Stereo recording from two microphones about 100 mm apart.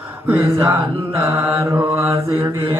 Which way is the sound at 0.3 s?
30° right (ahead or behind).